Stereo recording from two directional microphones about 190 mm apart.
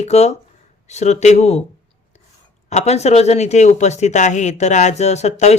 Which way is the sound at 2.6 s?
35° left (ahead or behind).